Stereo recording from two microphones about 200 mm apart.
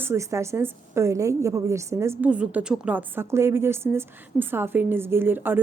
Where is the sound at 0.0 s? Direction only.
15° right (ahead or behind).